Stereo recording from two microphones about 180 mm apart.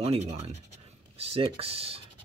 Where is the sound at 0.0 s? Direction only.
35° right (ahead or behind).